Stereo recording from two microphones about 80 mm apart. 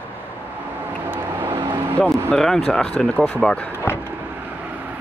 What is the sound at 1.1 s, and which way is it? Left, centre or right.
Vehicle, right.